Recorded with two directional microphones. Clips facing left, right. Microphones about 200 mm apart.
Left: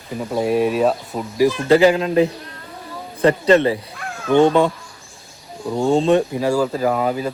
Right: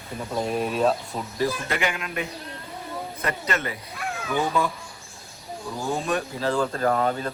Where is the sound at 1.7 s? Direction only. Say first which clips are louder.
Left 15 dB; 30° left (ahead or behind).